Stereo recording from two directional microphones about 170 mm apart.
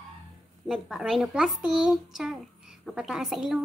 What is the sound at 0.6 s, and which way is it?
Speech, centre (ahead or behind).